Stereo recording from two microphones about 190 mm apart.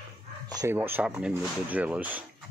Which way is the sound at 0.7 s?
10° right (ahead or behind).